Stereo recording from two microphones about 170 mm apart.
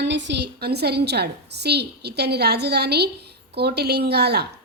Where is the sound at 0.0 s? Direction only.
90° right.